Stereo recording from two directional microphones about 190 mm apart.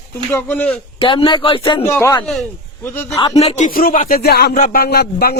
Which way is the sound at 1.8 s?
15° left (ahead or behind).